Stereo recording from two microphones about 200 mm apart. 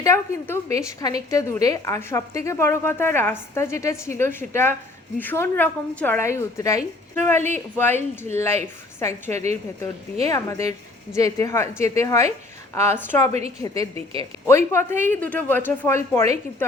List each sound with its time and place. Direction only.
0.0 s a woman's voice: 15° left (ahead or behind)
9.3 s a woman's voice: 35° right (ahead or behind)
10.2 s a woman's voice: 15° left (ahead or behind)
13.9 s speech: 30° right (ahead or behind)
14.4 s a woman's voice: 15° left (ahead or behind)